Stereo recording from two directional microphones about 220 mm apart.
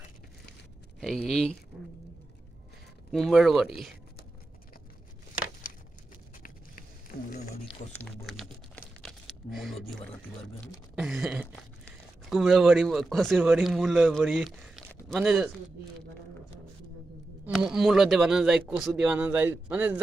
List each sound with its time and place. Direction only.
0.9 s a sound: centre (ahead or behind)
1.3 s speech: 5° left (ahead or behind)
3.1 s speech: centre (ahead or behind)
7.1 s a sound: 40° left (ahead or behind)
7.9 s crumpling: centre (ahead or behind)
10.9 s speech: 5° right (ahead or behind)
17.4 s speech: 5° right (ahead or behind)